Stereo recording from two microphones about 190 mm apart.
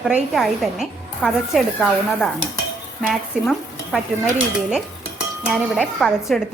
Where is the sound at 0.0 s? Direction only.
5° right (ahead or behind).